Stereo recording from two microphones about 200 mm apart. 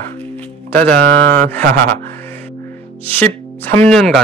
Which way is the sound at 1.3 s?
10° left (ahead or behind).